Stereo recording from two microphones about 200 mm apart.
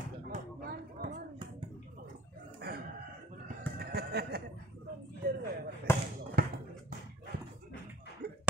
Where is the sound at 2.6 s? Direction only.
50° right (ahead or behind).